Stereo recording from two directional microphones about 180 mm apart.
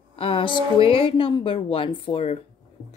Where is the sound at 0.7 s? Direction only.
30° left (ahead or behind).